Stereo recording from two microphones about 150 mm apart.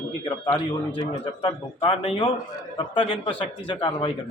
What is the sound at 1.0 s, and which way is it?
Speech, 35° left (ahead or behind).